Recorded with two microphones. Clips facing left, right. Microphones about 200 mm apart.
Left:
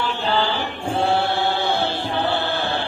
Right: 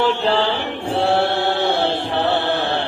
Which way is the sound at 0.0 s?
85° right.